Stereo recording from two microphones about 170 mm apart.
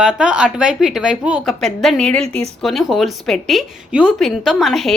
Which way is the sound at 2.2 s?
35° right (ahead or behind).